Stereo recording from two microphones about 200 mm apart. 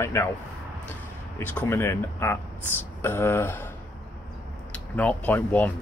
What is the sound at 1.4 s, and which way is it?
Speech, 10° left (ahead or behind).